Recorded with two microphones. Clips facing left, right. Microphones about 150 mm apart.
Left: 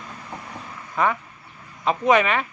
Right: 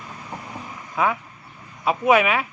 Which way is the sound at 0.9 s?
5° right (ahead or behind).